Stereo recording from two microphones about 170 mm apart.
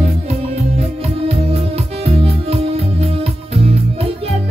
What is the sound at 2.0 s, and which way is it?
Music, 35° right (ahead or behind).